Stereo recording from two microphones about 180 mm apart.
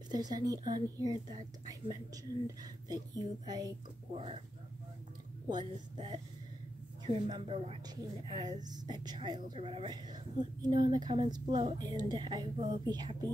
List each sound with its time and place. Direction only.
0.1 s a woman's voice: 20° right (ahead or behind)
5.5 s a woman's voice: 25° right (ahead or behind)